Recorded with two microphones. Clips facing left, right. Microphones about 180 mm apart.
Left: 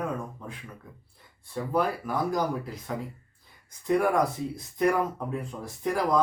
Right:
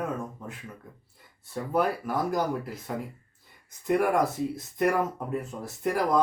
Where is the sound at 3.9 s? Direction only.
5° right (ahead or behind).